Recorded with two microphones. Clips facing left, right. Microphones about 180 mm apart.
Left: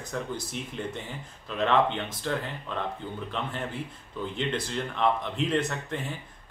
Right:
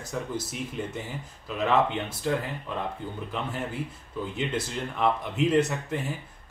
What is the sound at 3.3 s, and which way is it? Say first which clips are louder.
A man's voice: right 2 dB; 10° right (ahead or behind).